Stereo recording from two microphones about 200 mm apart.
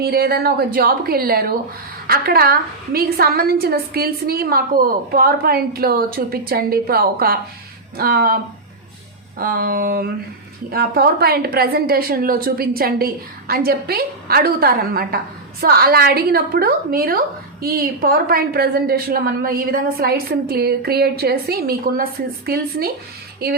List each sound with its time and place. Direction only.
0.0 s a woman's voice: 50° right (ahead or behind)
9.4 s a woman's voice: 50° right (ahead or behind)